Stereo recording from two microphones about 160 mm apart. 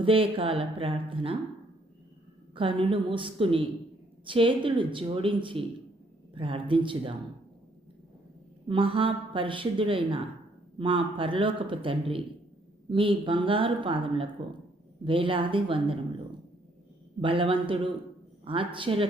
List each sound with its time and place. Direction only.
0.0 s speech: 35° right (ahead or behind)
2.6 s speech: 30° right (ahead or behind)
8.6 s speech: 35° right (ahead or behind)
17.2 s speech: 35° right (ahead or behind)